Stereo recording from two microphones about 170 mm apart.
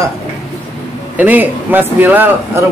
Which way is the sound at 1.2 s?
10° right (ahead or behind).